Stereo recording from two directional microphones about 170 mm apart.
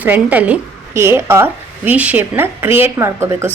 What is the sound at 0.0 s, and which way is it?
A woman's voice, 10° right (ahead or behind).